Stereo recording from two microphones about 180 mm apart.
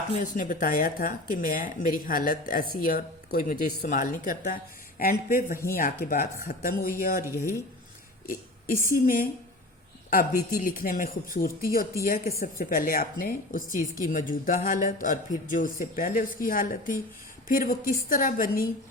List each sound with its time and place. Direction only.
0.2 s speech: 45° left (ahead or behind)
7.2 s speech: 15° right (ahead or behind)
8.9 s speech: 50° left (ahead or behind)
10.5 s a woman's voice: 50° left (ahead or behind)